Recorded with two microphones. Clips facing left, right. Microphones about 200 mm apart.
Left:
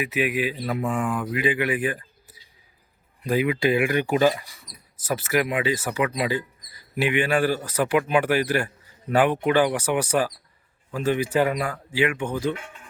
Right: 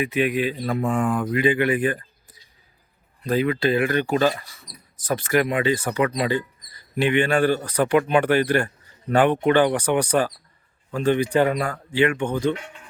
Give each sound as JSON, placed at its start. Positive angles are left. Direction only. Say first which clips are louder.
{"t": 0.0, "sound": "speech", "louder": "right 3 dB", "side_deg": 5}
{"t": 0.8, "sound": "speech", "louder": "right 4 dB", "side_deg": -35}
{"t": 1.3, "sound": "speech", "louder": "right 4 dB", "side_deg": 5}